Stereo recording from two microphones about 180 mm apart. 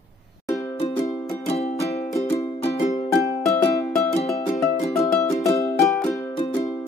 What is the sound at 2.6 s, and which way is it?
Music, 35° left (ahead or behind).